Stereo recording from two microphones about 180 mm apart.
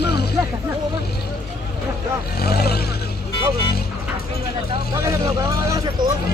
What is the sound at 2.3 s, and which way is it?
Speech, 60° left (ahead or behind).